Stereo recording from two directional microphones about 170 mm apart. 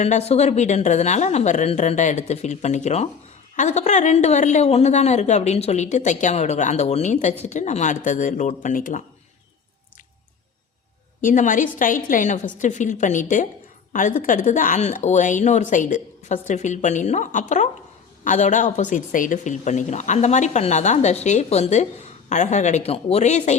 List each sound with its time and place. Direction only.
0.0 s a woman's voice: 40° left (ahead or behind)
11.2 s a woman's voice: 50° left (ahead or behind)